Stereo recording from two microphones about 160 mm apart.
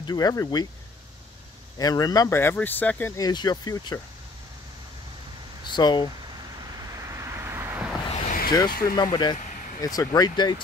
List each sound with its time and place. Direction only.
0.0 s speech: 25° left (ahead or behind)
1.8 s speech: 25° left (ahead or behind)
3.2 s speech: 25° left (ahead or behind)
5.7 s speech: 30° left (ahead or behind)
6.8 s vehicle: 20° right (ahead or behind)
8.1 s vehicle: 50° left (ahead or behind)
8.5 s speech: 30° left (ahead or behind)